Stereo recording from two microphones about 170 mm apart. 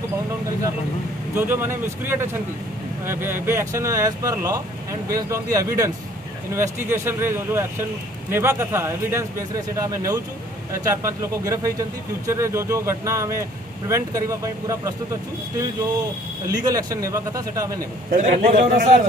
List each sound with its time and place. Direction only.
1.3 s speech: 15° right (ahead or behind)
16.4 s speech: 20° right (ahead or behind)
18.1 s a man's voice: 45° right (ahead or behind)